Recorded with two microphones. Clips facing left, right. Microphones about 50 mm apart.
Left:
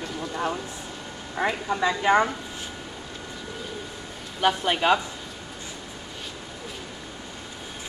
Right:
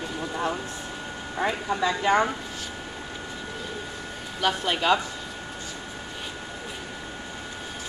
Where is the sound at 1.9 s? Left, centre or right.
Centre.